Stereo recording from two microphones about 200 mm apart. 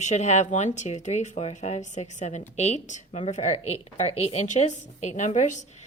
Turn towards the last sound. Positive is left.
turn(degrees=35)  # may be behind; listen again after turning